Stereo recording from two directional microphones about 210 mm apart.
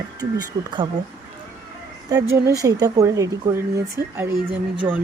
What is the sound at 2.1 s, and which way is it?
Speech, 15° right (ahead or behind).